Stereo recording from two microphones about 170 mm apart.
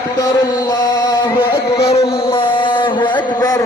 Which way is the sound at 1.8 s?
35° left (ahead or behind).